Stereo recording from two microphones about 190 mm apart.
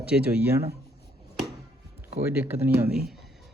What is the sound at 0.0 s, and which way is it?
Speech, 5° right (ahead or behind).